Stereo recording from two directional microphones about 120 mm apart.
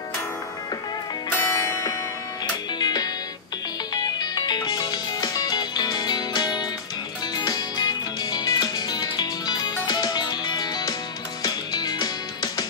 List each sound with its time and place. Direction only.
1.3 s music: 20° left (ahead or behind)